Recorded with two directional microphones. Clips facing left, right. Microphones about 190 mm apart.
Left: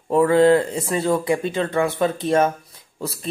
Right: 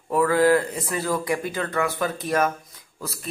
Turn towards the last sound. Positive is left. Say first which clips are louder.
# left 6 dB
turn(degrees=30)  # may be behind; listen again after turning